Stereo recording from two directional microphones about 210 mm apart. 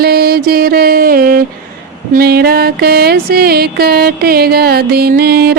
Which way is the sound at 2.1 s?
50° right (ahead or behind).